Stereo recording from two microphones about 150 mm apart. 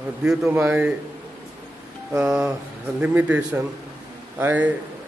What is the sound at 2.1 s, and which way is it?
Speech, 5° right (ahead or behind).